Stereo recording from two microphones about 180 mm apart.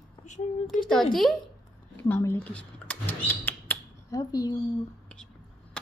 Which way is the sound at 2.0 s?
15° left (ahead or behind).